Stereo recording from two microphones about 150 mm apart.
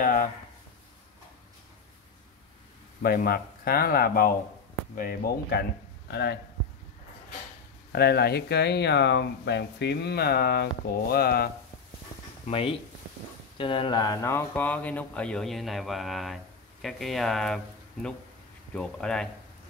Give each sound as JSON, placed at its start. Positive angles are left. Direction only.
{"t": 0.0, "sound": "a sound", "side_deg": 70}
{"t": 3.0, "sound": "speech", "side_deg": 90}
{"t": 7.9, "sound": "speech", "side_deg": 90}
{"t": 12.4, "sound": "speech", "side_deg": 40}
{"t": 18.8, "sound": "speech", "side_deg": 5}